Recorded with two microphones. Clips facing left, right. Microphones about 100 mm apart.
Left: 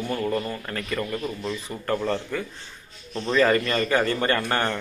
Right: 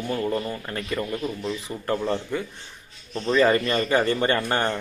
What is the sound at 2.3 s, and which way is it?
Speech, 20° right (ahead or behind).